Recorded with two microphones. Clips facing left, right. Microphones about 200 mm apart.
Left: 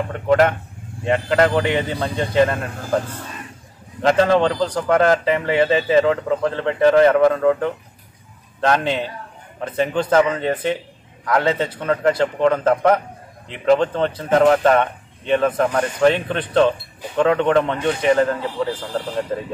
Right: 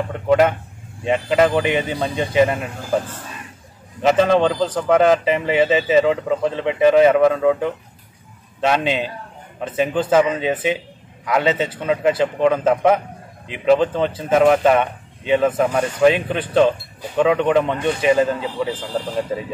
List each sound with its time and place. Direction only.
0.1 s a man's voice: 5° right (ahead or behind)
4.0 s a man's voice: 5° right (ahead or behind)